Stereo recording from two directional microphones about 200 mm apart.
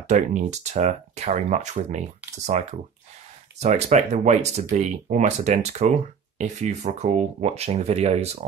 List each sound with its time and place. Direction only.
0.1 s speech: 35° right (ahead or behind)